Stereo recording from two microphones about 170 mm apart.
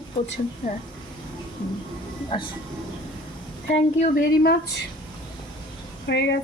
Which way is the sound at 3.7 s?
45° left (ahead or behind).